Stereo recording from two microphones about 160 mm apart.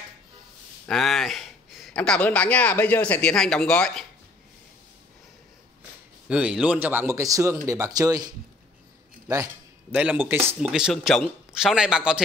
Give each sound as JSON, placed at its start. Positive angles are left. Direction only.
{"t": 0.8, "sound": "speech", "side_deg": 0}
{"t": 6.2, "sound": "speech", "side_deg": -5}
{"t": 9.9, "sound": "speech", "side_deg": -10}
{"t": 10.7, "sound": "speech", "side_deg": 0}